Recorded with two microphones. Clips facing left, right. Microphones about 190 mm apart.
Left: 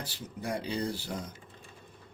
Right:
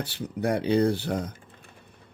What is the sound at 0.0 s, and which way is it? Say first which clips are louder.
Speech: right 10 dB; 65° right (ahead or behind).